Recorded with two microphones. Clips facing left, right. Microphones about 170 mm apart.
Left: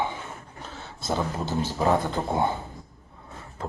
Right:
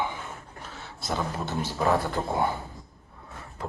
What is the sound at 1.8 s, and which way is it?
Speech, 20° left (ahead or behind).